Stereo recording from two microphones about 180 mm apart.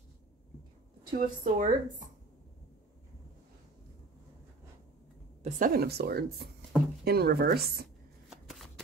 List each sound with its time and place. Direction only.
1.1 s speech: 45° right (ahead or behind)
5.4 s speech: 50° right (ahead or behind)
8.3 s shuffling cards: centre (ahead or behind)